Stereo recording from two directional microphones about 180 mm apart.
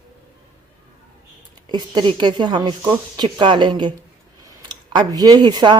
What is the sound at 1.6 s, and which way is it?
A woman's voice, 25° right (ahead or behind).